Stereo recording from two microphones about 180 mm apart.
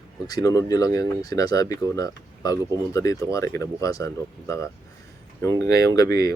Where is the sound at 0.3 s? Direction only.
20° left (ahead or behind).